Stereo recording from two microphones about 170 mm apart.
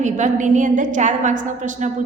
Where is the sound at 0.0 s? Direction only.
45° right (ahead or behind).